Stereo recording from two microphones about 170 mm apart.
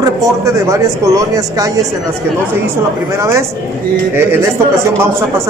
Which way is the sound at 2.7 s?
15° right (ahead or behind).